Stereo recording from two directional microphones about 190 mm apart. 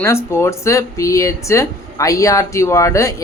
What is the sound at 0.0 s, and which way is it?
Speech, 15° left (ahead or behind).